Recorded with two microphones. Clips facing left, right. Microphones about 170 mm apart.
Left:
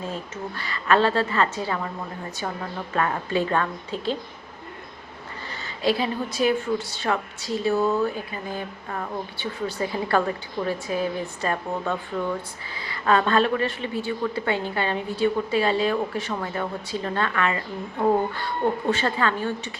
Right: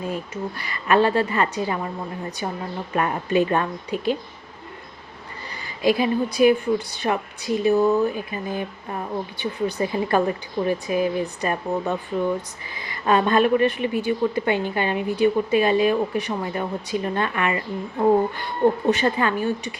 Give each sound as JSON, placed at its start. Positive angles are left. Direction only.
{"t": 0.1, "sound": "a woman's voice", "side_deg": -15}
{"t": 5.6, "sound": "a woman's voice", "side_deg": -15}